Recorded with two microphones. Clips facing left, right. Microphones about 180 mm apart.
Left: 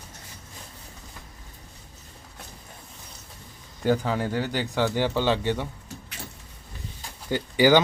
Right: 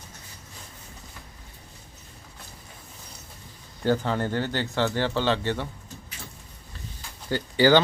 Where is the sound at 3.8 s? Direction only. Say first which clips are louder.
Even; 10° left (ahead or behind).